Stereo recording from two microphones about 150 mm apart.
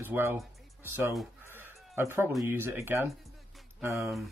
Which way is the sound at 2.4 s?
15° right (ahead or behind).